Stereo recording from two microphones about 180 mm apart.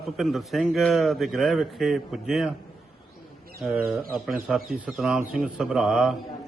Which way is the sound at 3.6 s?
Centre (ahead or behind).